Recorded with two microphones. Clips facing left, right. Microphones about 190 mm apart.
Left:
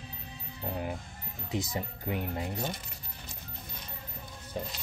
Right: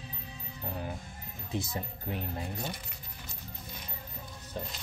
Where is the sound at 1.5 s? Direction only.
20° left (ahead or behind).